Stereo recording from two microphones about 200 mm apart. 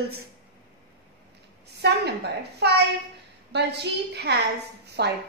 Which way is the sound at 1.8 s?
55° right (ahead or behind).